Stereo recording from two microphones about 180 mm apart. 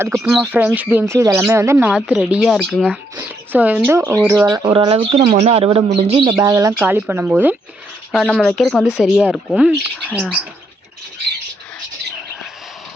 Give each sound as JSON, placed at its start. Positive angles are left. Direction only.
{"t": 0.0, "sound": "speech", "side_deg": -15}
{"t": 1.9, "sound": "speech", "side_deg": -5}
{"t": 4.4, "sound": "speech", "side_deg": -25}
{"t": 8.1, "sound": "speech", "side_deg": 0}